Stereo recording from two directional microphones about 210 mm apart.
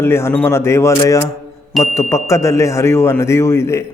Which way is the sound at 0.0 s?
10° left (ahead or behind).